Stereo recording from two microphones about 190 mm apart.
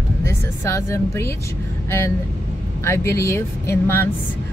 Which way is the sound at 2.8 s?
15° left (ahead or behind).